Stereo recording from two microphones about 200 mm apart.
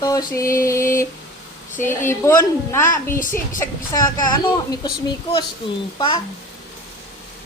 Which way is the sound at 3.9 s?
15° left (ahead or behind).